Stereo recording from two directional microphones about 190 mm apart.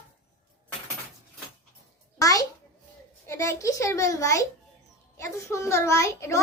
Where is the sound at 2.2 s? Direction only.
20° left (ahead or behind).